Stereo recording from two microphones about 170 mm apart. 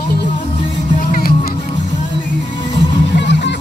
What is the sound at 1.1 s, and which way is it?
Music, 60° left (ahead or behind).